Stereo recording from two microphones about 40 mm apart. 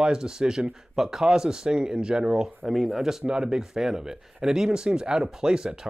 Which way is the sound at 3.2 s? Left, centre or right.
Centre.